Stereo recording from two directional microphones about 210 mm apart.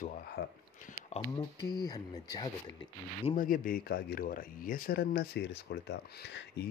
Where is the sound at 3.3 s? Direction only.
40° left (ahead or behind).